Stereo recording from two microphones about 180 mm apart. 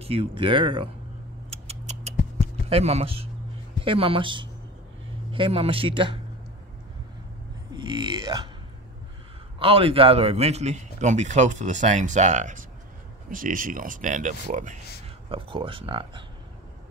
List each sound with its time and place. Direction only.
0.0 s speech: 30° right (ahead or behind)
1.5 s a sound: 35° right (ahead or behind)
2.4 s a man's voice: 35° right (ahead or behind)
7.7 s speech: 25° right (ahead or behind)
9.6 s a man's voice: 30° right (ahead or behind)
15.2 s speech: 30° right (ahead or behind)